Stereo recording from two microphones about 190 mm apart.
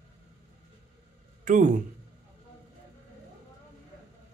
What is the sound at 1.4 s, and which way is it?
Speech, 45° right (ahead or behind).